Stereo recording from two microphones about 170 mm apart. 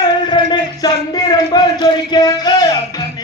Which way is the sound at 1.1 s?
25° left (ahead or behind).